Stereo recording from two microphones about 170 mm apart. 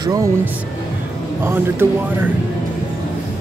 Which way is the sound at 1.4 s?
15° right (ahead or behind).